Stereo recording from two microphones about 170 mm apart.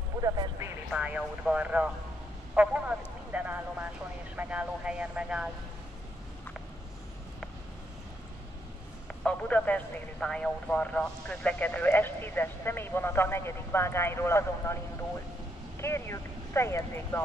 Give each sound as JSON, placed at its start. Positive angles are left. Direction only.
{"t": 0.2, "sound": "vehicle", "side_deg": -20}
{"t": 0.9, "sound": "speech", "side_deg": -5}
{"t": 9.0, "sound": "speech", "side_deg": 10}
{"t": 15.8, "sound": "speech", "side_deg": 15}